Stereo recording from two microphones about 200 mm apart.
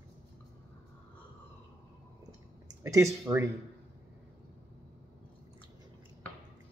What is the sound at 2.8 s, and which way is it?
Speech, 15° right (ahead or behind).